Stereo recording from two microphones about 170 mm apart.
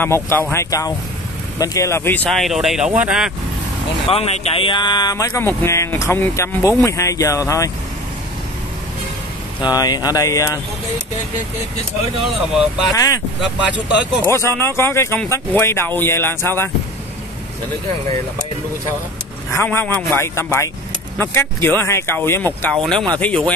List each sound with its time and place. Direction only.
0.0 s speech: 15° left (ahead or behind); by 3.3 s 5° right (ahead or behind)
4.1 s speech: 35° left (ahead or behind); by 7.7 s 20° left (ahead or behind)
9.8 s speech: 20° left (ahead or behind)
12.2 s speech: centre (ahead or behind)
12.9 s speech: 20° left (ahead or behind)
14.2 s speech: 15° left (ahead or behind)
19.5 s speech: 15° left (ahead or behind)